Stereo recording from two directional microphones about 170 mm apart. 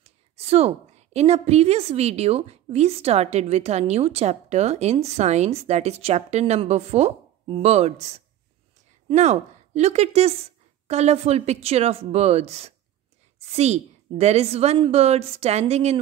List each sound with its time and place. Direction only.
0.0 s a woman's voice: 35° right (ahead or behind)